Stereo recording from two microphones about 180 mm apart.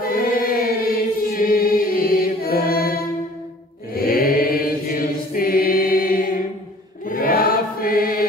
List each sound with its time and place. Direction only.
0.1 s choir: 50° left (ahead or behind)
3.9 s chant: 55° left (ahead or behind)